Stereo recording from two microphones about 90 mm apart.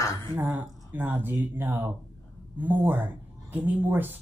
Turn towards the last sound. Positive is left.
turn(degrees=-20)  # may be behind; listen again after turning